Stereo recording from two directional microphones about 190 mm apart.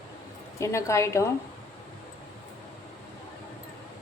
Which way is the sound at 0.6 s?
15° left (ahead or behind).